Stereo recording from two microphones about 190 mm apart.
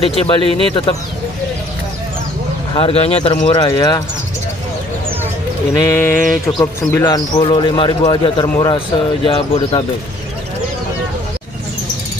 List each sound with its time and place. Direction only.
0.1 s speech: 30° left (ahead or behind)
2.7 s speech: 30° left (ahead or behind)
5.8 s speech: 15° left (ahead or behind)